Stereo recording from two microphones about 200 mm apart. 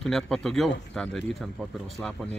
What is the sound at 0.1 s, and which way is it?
Speech, centre (ahead or behind).